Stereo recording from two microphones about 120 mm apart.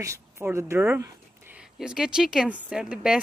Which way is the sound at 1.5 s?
5° right (ahead or behind).